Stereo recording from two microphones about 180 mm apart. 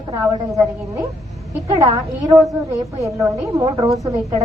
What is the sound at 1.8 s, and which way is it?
A woman's voice, 20° right (ahead or behind).